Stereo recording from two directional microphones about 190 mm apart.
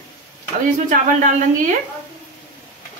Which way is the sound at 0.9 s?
40° right (ahead or behind).